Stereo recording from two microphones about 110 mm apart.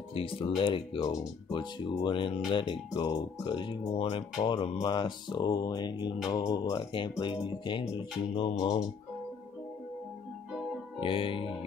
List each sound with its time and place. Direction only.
0.1 s speech: 55° left (ahead or behind)
8.4 s music: 55° left (ahead or behind)
11.0 s music: 55° left (ahead or behind)